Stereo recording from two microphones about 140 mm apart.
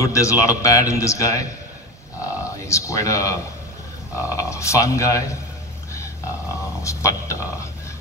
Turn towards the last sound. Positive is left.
turn(degrees=20)  # may be behind; listen again after turning